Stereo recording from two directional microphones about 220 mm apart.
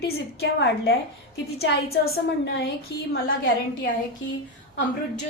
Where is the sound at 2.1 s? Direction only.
50° left (ahead or behind).